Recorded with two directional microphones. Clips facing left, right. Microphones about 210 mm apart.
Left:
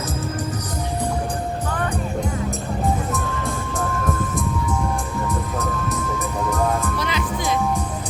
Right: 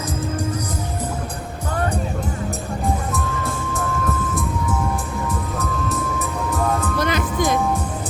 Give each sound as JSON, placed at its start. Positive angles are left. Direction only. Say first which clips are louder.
{"t": 5.9, "sound": "music", "louder": "even", "side_deg": 0}
{"t": 7.0, "sound": "music", "louder": "right 4 dB", "side_deg": -50}